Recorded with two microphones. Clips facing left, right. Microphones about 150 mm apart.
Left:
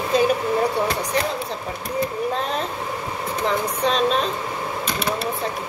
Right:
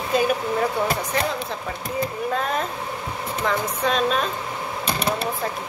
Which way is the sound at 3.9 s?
30° left (ahead or behind).